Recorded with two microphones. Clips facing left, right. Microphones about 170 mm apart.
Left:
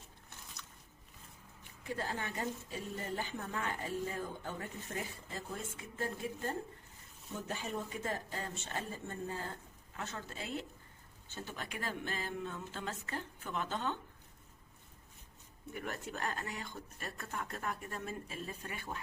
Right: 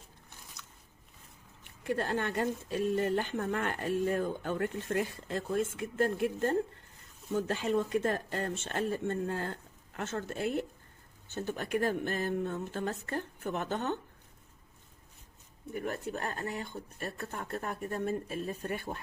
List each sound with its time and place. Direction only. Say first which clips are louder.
1.8 s speech: right 8 dB; 65° right (ahead or behind)
7.3 s speech: right 10 dB; 80° right; by 14.0 s 55° right (ahead or behind)
16.6 s speech: right 6 dB; 30° right (ahead or behind)